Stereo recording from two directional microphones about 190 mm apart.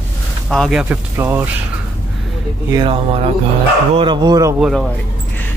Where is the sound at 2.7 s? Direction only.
25° right (ahead or behind).